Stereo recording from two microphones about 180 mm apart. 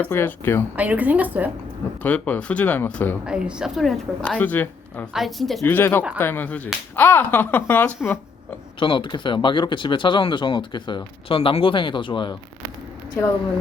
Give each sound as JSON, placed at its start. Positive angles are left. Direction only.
{"t": 0.0, "sound": "speech", "side_deg": 10}
{"t": 0.8, "sound": "a woman's voice", "side_deg": -10}
{"t": 2.0, "sound": "speech", "side_deg": 10}
{"t": 3.2, "sound": "a woman's voice", "side_deg": -5}
{"t": 5.6, "sound": "speech", "side_deg": 10}
{"t": 8.8, "sound": "speech", "side_deg": 25}